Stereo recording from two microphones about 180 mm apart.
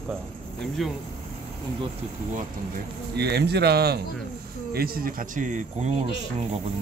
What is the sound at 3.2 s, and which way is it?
Speech, 65° right (ahead or behind).